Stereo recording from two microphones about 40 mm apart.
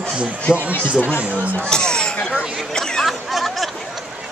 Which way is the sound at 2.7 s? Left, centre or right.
Centre.